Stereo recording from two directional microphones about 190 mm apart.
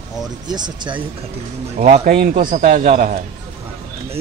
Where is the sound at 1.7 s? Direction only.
35° right (ahead or behind).